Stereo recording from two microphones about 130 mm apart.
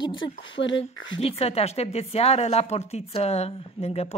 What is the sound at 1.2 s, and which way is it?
A woman's voice, 50° left (ahead or behind).